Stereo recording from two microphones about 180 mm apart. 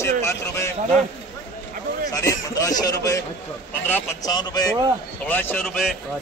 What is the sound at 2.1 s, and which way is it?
A man's voice, 15° left (ahead or behind).